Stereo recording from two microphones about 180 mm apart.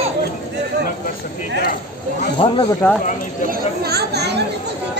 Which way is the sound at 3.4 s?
60° right (ahead or behind).